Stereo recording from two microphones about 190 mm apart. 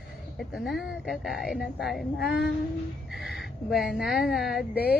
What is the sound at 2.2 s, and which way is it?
Child singing, 55° left (ahead or behind).